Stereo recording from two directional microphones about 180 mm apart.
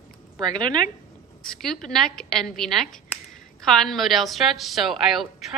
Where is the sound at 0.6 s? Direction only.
25° right (ahead or behind).